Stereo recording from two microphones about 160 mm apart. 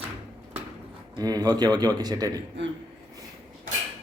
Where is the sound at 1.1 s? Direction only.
25° right (ahead or behind).